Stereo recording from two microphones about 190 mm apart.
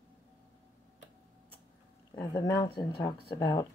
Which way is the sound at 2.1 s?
20° left (ahead or behind).